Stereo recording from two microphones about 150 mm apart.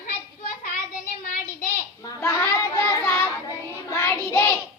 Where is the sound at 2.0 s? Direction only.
20° left (ahead or behind).